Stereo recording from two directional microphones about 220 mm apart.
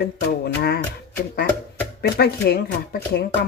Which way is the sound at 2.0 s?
45° left (ahead or behind).